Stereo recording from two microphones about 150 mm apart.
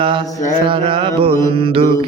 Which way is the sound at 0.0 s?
35° right (ahead or behind).